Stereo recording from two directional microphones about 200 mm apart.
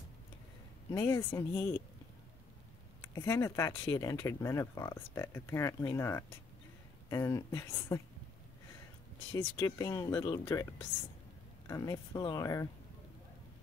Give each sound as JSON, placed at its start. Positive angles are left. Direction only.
{"t": 0.9, "sound": "speech", "side_deg": 15}
{"t": 3.0, "sound": "speech", "side_deg": 15}
{"t": 9.3, "sound": "speech", "side_deg": 15}